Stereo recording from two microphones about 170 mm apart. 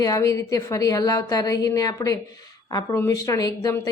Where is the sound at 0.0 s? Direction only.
20° left (ahead or behind).